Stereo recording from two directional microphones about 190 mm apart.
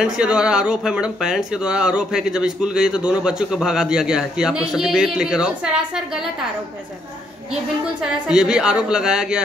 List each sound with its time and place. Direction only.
0.0 s speech: 5° right (ahead or behind)
8.0 s speech: 5° right (ahead or behind)